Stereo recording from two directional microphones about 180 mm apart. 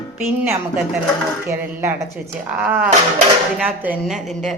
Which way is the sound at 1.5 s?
15° right (ahead or behind).